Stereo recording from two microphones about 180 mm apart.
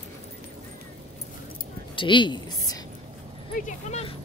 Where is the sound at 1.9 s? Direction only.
25° left (ahead or behind).